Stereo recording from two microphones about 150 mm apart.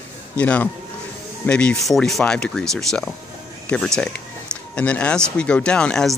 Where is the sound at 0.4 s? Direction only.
10° left (ahead or behind).